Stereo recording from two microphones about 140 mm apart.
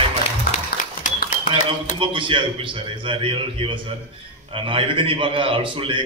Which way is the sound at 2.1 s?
35° right (ahead or behind).